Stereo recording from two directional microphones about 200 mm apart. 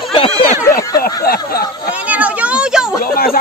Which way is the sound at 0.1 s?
25° left (ahead or behind).